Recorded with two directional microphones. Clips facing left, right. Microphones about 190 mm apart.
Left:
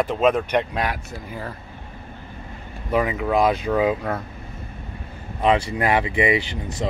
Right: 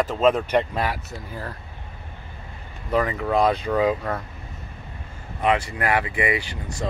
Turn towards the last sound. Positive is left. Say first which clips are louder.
# left 4 dB
turn(degrees=25)  # may be behind; listen again after turning